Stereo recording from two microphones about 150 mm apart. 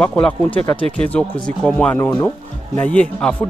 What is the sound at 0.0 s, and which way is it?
Speech, 10° left (ahead or behind).